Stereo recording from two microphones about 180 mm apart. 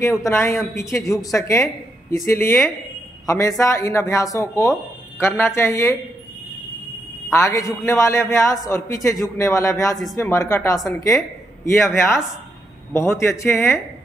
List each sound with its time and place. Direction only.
0.0 s a woman's voice: 15° left (ahead or behind)
7.2 s a woman's voice: 15° left (ahead or behind)